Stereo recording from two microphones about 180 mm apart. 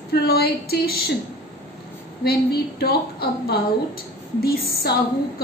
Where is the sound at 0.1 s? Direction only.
60° left (ahead or behind).